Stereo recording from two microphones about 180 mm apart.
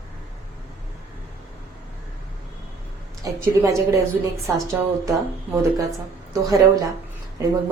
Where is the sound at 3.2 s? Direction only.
15° right (ahead or behind).